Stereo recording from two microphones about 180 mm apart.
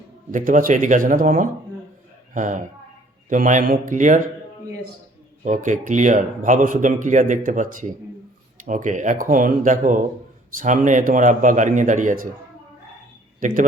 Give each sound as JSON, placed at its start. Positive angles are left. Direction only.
{"t": 0.3, "sound": "speech", "side_deg": -45}
{"t": 5.5, "sound": "speech", "side_deg": -45}
{"t": 13.4, "sound": "speech", "side_deg": -50}